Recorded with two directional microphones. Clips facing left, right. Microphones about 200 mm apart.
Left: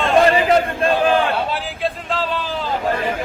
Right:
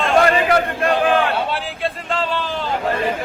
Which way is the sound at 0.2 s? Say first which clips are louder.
Left 2 dB; 25° left (ahead or behind).